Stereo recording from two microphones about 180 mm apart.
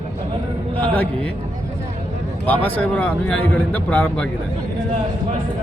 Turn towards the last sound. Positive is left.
turn(degrees=10)  # may be behind; listen again after turning